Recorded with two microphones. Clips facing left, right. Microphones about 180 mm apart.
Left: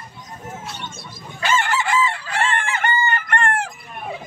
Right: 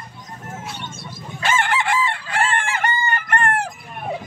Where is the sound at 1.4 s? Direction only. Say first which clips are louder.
Even; 50° right (ahead or behind).